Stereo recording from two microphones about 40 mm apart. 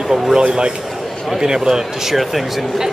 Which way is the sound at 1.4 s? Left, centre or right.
Centre.